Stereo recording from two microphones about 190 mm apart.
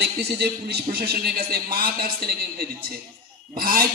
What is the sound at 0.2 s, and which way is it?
Speech, 60° right (ahead or behind).